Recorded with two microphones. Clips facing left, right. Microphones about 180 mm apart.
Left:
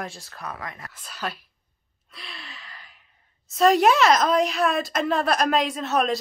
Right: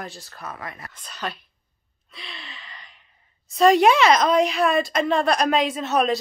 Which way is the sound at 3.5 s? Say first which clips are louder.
Right 2 dB; centre (ahead or behind).